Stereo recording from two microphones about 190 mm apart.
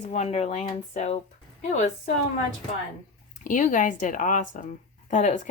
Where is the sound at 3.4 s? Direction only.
45° left (ahead or behind).